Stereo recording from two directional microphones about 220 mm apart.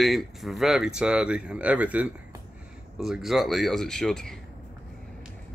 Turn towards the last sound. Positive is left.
turn(degrees=0)  # may be behind; listen again after turning